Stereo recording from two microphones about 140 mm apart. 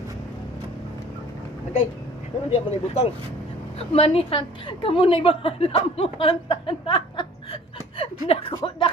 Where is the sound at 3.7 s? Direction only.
45° left (ahead or behind).